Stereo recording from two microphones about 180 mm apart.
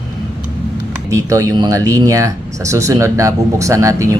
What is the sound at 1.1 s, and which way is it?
Speech, 15° right (ahead or behind).